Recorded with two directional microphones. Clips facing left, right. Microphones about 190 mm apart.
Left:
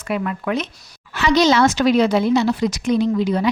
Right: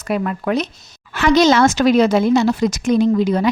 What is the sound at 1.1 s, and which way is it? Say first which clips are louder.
Speech: right 3 dB; 50° right (ahead or behind).